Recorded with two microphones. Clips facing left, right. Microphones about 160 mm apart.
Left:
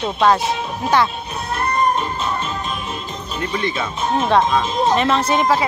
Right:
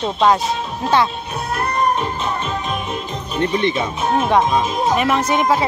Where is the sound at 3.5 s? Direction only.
20° right (ahead or behind).